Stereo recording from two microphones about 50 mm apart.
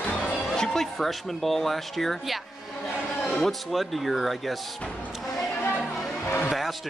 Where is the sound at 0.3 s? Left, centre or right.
Left.